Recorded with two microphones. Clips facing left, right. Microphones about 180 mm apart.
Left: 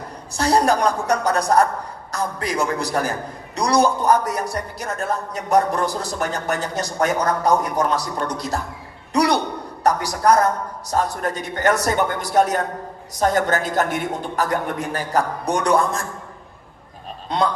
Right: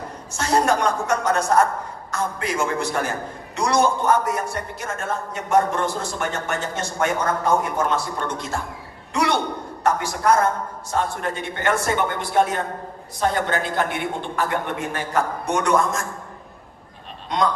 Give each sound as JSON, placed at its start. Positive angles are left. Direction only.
{"t": 0.3, "sound": "a man's voice", "side_deg": 35}
{"t": 17.2, "sound": "speech", "side_deg": 30}